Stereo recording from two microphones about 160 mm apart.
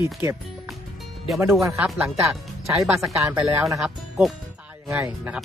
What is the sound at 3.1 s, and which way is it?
Speech, 5° right (ahead or behind).